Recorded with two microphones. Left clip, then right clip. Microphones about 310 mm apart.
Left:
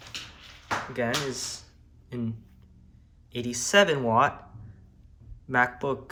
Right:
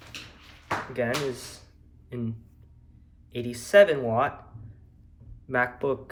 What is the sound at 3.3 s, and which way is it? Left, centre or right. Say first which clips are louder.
Speech: right 3 dB; centre.